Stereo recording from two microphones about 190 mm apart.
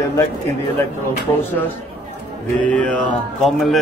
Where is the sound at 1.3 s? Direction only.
10° left (ahead or behind).